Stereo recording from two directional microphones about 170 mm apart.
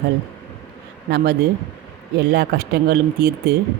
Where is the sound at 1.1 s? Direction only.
75° right (ahead or behind).